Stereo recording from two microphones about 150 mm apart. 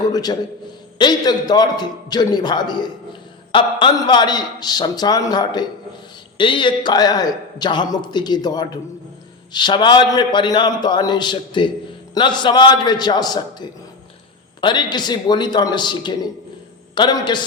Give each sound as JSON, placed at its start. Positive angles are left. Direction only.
{"t": 0.1, "sound": "a man's voice", "side_deg": 25}